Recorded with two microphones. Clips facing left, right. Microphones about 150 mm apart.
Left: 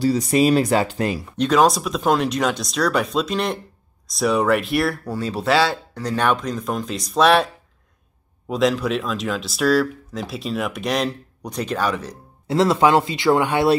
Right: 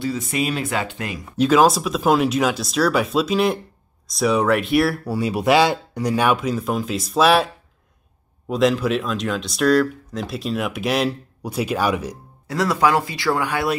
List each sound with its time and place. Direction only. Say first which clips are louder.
0.0 s speech: left 6 dB; 40° left (ahead or behind)
1.3 s speech: right 2 dB; 5° right (ahead or behind)
12.4 s speech: left 3 dB; 25° left (ahead or behind)